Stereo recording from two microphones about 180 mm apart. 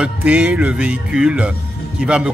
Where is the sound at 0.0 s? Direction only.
10° right (ahead or behind).